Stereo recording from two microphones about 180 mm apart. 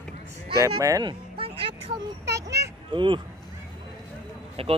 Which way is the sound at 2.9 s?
30° right (ahead or behind).